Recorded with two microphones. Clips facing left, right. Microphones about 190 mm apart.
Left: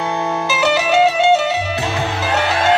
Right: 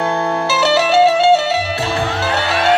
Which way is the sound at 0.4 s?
15° left (ahead or behind).